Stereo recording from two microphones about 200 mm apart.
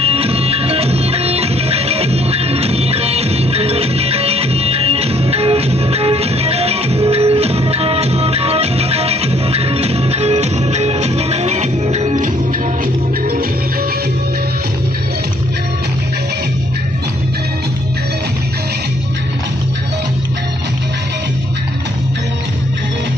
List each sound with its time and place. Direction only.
0.0 s music: 30° right (ahead or behind)